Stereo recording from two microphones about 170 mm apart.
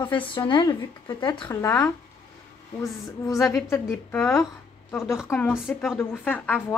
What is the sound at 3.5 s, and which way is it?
A woman's voice, 15° left (ahead or behind).